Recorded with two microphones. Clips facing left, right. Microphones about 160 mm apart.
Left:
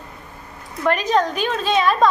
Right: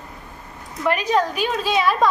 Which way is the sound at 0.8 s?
10° right (ahead or behind).